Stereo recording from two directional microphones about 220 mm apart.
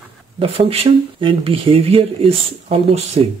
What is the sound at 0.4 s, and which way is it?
A man's voice, 25° right (ahead or behind).